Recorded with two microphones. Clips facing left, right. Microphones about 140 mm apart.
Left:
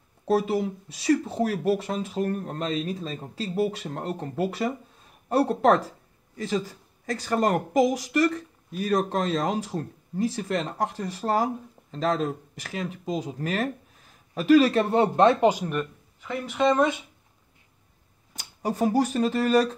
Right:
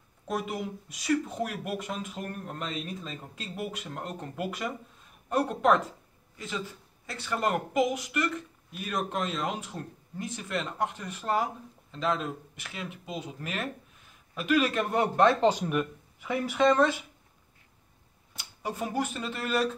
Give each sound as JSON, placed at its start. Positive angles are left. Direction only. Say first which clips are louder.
{"t": 0.3, "sound": "speech", "louder": "left 9 dB", "side_deg": 30}
{"t": 15.7, "sound": "speech", "louder": "even", "side_deg": -5}
{"t": 16.5, "sound": "speech", "louder": "left 1 dB", "side_deg": 5}
{"t": 18.3, "sound": "speech", "louder": "left 6 dB", "side_deg": 40}